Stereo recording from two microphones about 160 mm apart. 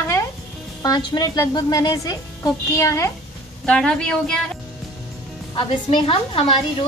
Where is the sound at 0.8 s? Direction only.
25° left (ahead or behind).